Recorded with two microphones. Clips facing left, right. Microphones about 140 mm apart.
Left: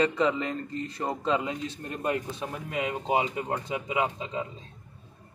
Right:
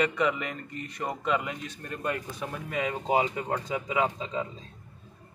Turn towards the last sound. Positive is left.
turn(degrees=15)  # may be behind; listen again after turning